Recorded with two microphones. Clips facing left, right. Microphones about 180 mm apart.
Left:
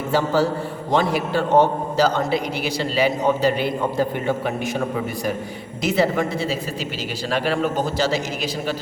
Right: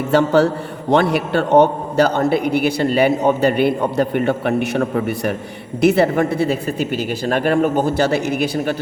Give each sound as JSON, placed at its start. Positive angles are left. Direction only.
{"t": 0.1, "sound": "a man's voice", "side_deg": -65}